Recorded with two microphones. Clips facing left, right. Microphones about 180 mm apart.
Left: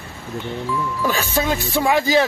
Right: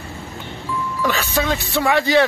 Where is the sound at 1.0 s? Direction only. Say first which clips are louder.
Right 2 dB; 5° left (ahead or behind).